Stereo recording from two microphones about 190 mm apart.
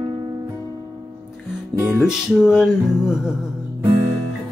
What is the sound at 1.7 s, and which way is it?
Music, 5° right (ahead or behind).